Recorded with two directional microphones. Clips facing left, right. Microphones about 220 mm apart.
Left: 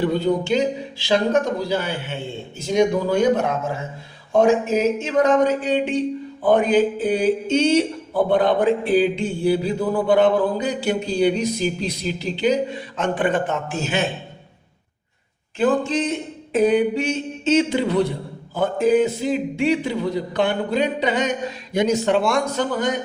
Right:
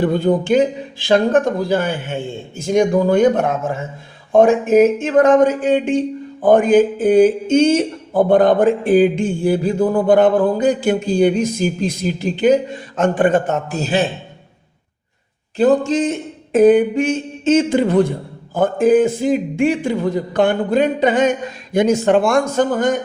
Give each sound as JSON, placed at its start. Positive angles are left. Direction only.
{"t": 0.0, "sound": "a man's voice", "side_deg": -50}
{"t": 15.5, "sound": "speech", "side_deg": -40}